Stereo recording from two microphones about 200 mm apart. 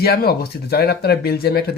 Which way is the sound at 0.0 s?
50° left (ahead or behind).